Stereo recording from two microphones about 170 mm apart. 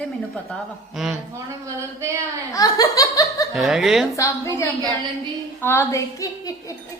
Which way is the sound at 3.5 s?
Centre (ahead or behind).